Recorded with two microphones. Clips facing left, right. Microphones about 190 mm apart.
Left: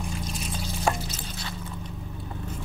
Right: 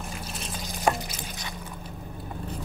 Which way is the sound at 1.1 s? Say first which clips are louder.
Left 1 dB; 15° right (ahead or behind).